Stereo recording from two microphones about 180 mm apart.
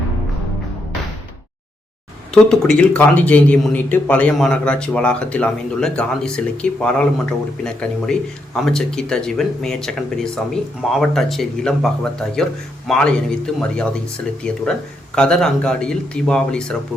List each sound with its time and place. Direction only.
2.3 s a man's voice: 5° left (ahead or behind)
12.9 s a man's voice: 5° left (ahead or behind)